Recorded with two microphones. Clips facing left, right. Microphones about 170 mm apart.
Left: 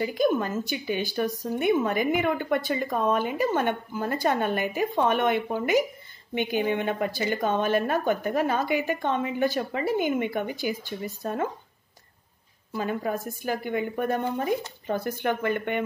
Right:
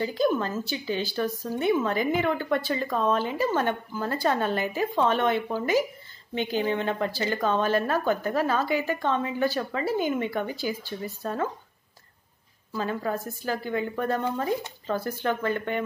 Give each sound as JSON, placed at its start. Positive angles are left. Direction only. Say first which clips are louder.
{"t": 0.0, "sound": "a woman's voice", "louder": "left 1 dB", "side_deg": 15}
{"t": 12.7, "sound": "a woman's voice", "louder": "left 1 dB", "side_deg": 15}